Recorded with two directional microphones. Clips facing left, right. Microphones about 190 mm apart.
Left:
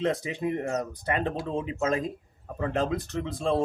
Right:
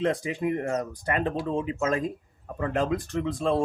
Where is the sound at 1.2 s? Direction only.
30° right (ahead or behind).